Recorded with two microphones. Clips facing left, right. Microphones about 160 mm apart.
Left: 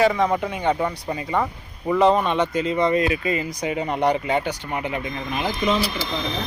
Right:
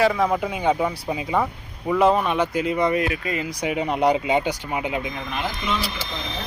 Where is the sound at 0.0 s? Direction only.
Centre (ahead or behind).